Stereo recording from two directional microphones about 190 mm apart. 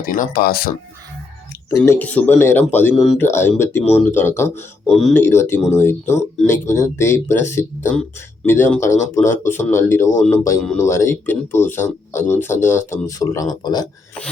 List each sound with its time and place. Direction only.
0.0 s speech: 45° left (ahead or behind)
1.8 s speech: 10° left (ahead or behind)
4.9 s speech: centre (ahead or behind)
5.1 s speech: 15° left (ahead or behind)